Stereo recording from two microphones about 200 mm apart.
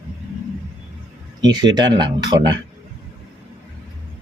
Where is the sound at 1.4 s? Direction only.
20° right (ahead or behind).